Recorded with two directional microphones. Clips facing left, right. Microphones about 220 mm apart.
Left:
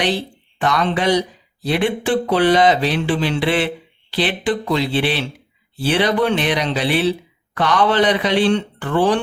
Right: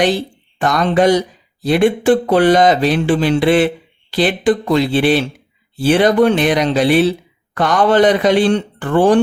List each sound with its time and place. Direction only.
0.6 s speech: 45° right (ahead or behind)